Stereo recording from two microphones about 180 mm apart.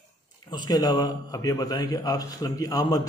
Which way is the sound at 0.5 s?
20° left (ahead or behind).